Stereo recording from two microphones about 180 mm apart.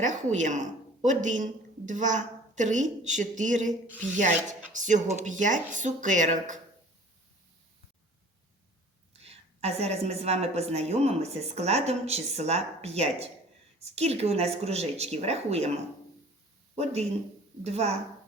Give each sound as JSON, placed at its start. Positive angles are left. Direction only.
{"t": 0.0, "sound": "speech", "side_deg": -40}
{"t": 9.1, "sound": "a woman's voice", "side_deg": -35}
{"t": 16.7, "sound": "a woman's voice", "side_deg": -35}